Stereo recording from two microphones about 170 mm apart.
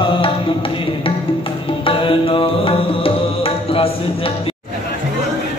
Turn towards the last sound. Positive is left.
turn(degrees=35)  # may be behind; listen again after turning